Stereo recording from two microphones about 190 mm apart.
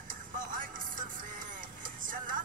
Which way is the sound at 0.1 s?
45° right (ahead or behind).